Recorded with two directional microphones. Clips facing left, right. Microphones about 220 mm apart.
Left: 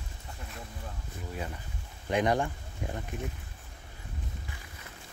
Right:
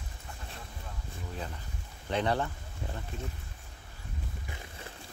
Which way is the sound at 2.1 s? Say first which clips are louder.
Left 3 dB; 15° left (ahead or behind).